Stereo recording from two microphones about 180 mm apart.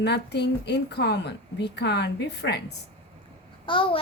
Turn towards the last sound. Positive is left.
turn(degrees=30)  # may be behind; listen again after turning